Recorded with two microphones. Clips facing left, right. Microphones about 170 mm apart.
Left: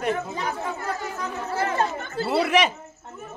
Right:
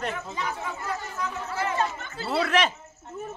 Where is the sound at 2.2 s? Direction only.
10° left (ahead or behind).